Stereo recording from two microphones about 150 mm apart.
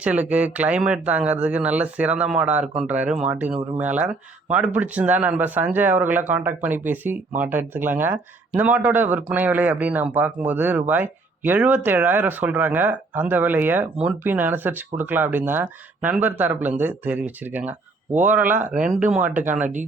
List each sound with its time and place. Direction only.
0.0 s speech: 10° right (ahead or behind)
18.4 s speech: 60° right (ahead or behind)
18.7 s speech: 5° right (ahead or behind)